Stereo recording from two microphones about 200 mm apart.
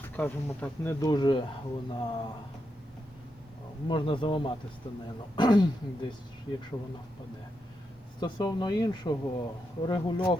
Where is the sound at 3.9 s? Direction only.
25° left (ahead or behind).